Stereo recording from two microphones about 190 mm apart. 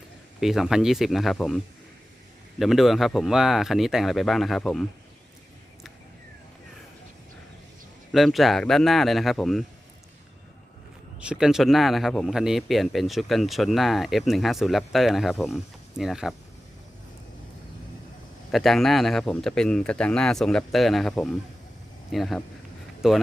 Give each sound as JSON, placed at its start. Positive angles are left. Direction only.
{"t": 0.3, "sound": "speech", "side_deg": 0}
{"t": 8.1, "sound": "speech", "side_deg": 0}
{"t": 11.2, "sound": "speech", "side_deg": -5}
{"t": 18.5, "sound": "speech", "side_deg": 0}